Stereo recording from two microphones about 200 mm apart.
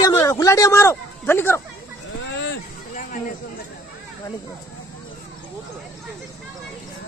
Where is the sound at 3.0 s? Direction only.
40° left (ahead or behind).